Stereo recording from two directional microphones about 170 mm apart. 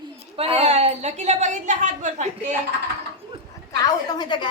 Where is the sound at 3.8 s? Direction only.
25° left (ahead or behind).